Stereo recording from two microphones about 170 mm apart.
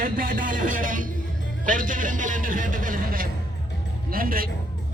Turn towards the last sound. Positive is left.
turn(degrees=-55)  # may be behind; listen again after turning